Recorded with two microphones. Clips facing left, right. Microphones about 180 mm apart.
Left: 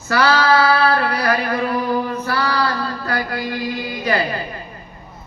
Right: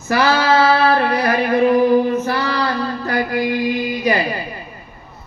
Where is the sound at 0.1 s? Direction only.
20° right (ahead or behind).